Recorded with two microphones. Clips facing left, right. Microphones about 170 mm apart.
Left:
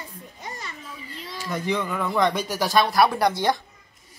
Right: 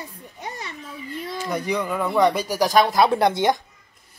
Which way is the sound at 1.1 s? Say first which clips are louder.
Right 8 dB; 55° right (ahead or behind).